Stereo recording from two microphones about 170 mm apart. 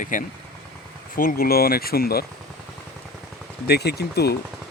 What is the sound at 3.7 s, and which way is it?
Speech, 75° left (ahead or behind).